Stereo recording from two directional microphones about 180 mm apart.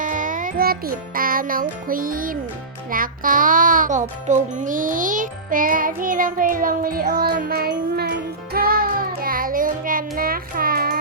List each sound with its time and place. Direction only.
0.0 s music: 45° right (ahead or behind)